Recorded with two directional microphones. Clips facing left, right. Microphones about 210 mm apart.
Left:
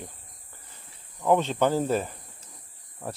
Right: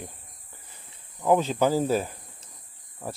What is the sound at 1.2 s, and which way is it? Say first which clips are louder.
Speech: right 1 dB; 5° right (ahead or behind).